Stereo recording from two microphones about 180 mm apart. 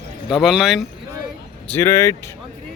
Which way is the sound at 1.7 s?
15° left (ahead or behind).